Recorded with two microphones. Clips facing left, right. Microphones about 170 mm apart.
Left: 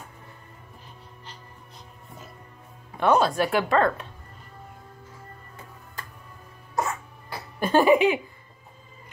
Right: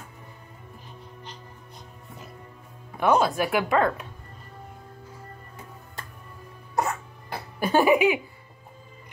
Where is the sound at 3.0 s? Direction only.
10° right (ahead or behind).